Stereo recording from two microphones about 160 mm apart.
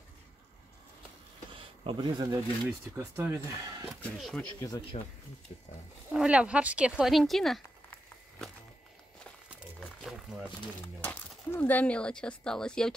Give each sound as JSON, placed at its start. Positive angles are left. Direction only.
{"t": 1.5, "sound": "a sound", "side_deg": -30}
{"t": 3.0, "sound": "speech", "side_deg": -15}
{"t": 3.8, "sound": "speech", "side_deg": 0}
{"t": 4.6, "sound": "speech", "side_deg": 25}
{"t": 6.1, "sound": "speech", "side_deg": -5}
{"t": 9.8, "sound": "a sound", "side_deg": 0}
{"t": 11.0, "sound": "speech", "side_deg": 10}